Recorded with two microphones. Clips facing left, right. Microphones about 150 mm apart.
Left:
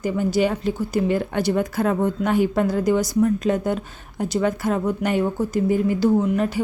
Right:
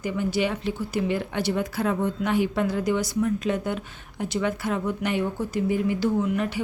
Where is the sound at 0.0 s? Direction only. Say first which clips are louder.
Left 5 dB; 40° left (ahead or behind).